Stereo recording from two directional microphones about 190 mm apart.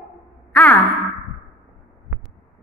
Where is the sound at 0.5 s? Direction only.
5° left (ahead or behind).